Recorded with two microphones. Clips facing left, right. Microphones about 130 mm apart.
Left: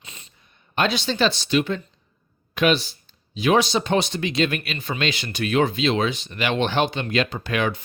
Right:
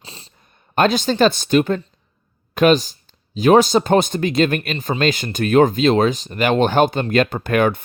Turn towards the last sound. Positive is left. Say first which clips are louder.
# right 7 dB
turn(degrees=-50)  # may be behind; listen again after turning